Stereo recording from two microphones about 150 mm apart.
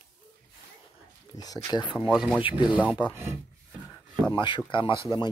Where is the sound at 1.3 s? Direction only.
25° left (ahead or behind).